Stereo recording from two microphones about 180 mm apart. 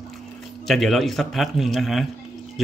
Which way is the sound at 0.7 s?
Centre (ahead or behind).